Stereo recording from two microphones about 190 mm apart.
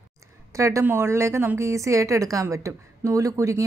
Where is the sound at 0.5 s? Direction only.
15° right (ahead or behind).